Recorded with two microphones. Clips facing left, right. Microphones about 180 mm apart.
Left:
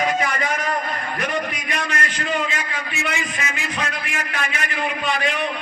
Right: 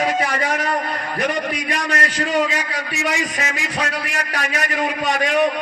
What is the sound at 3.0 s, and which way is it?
A man's voice, 40° right (ahead or behind).